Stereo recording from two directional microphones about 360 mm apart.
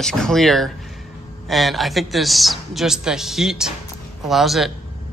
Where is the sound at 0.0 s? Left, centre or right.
Centre.